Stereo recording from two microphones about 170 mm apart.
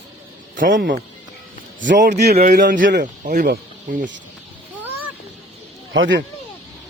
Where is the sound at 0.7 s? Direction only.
90° right; by 4.0 s 50° right (ahead or behind).